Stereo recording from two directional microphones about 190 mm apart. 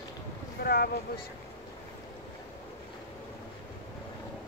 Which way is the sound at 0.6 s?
55° left (ahead or behind).